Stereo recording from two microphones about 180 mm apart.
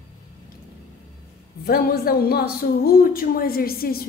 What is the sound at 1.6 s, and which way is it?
A woman's voice, 60° left (ahead or behind).